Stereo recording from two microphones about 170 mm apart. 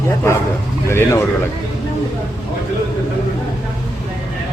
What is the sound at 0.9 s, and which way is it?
Speech, 15° left (ahead or behind).